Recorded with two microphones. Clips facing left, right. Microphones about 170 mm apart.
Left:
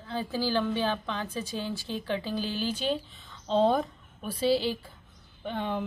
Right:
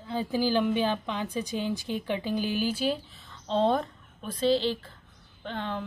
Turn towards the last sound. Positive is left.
turn(degrees=15)  # may be behind; listen again after turning